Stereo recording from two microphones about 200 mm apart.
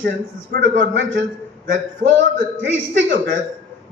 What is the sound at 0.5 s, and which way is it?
Speech, 60° right (ahead or behind).